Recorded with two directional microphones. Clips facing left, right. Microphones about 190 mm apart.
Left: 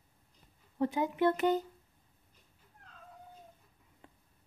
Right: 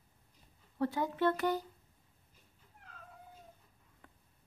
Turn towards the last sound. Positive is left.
turn(degrees=25)  # may be behind; listen again after turning